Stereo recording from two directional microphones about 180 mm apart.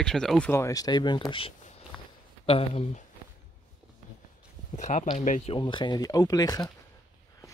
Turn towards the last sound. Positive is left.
turn(degrees=20)  # may be behind; listen again after turning